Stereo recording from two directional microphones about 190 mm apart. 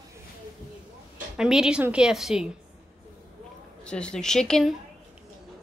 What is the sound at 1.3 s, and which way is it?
Speech, 5° right (ahead or behind).